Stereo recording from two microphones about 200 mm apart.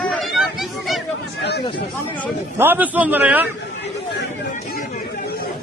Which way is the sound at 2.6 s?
10° right (ahead or behind).